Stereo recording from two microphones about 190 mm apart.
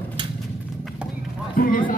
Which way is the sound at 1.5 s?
45° left (ahead or behind).